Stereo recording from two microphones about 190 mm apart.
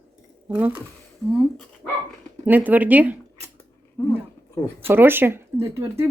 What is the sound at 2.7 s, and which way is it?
Speech, 10° right (ahead or behind).